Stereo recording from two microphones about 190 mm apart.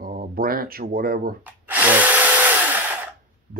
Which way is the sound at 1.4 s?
10° right (ahead or behind).